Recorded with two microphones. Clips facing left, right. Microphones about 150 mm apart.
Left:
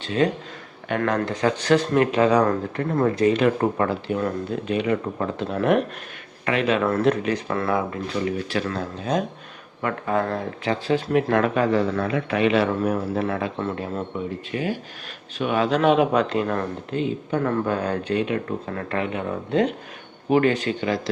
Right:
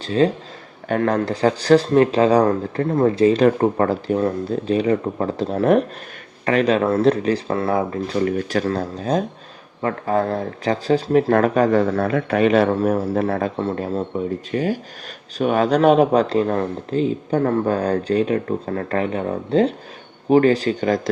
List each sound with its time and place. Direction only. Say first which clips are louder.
0.0 s speech: right 4 dB; 35° right (ahead or behind)
8.2 s speech: right 5 dB; 45° right (ahead or behind)